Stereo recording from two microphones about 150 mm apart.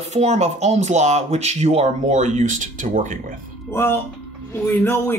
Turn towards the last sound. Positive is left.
turn(degrees=15)  # may be behind; listen again after turning